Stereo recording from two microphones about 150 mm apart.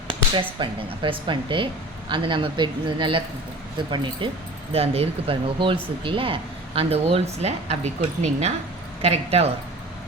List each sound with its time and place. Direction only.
0.6 s speech: 35° right (ahead or behind)